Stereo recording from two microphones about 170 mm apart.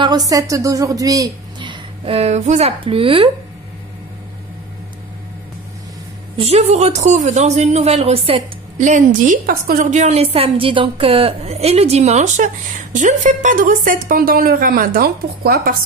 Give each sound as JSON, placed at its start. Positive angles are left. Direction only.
{"t": 0.0, "sound": "a woman's voice", "side_deg": -20}
{"t": 6.3, "sound": "a man's voice", "side_deg": -35}